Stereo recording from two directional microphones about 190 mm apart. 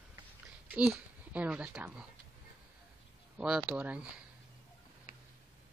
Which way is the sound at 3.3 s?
5° right (ahead or behind).